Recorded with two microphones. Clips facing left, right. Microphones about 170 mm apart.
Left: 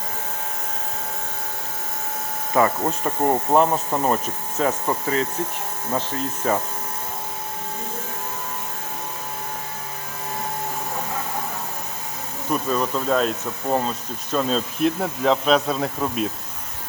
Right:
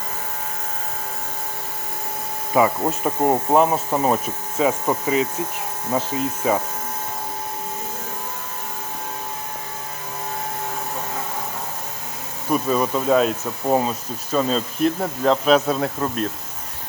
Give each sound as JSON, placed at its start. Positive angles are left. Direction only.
{"t": 2.6, "sound": "speech", "side_deg": -10}
{"t": 12.6, "sound": "speech", "side_deg": -5}